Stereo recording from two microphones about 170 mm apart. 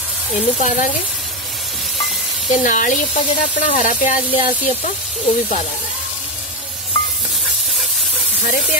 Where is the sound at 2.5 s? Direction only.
50° left (ahead or behind).